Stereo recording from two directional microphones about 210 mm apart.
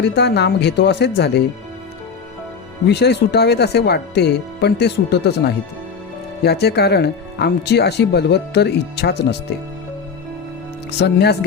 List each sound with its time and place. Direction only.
0.0 s speech: 55° left (ahead or behind)
2.8 s speech: 50° left (ahead or behind)
11.0 s speech: 50° left (ahead or behind)